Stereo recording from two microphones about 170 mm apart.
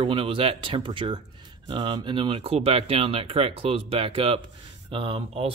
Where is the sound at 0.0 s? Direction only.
35° right (ahead or behind).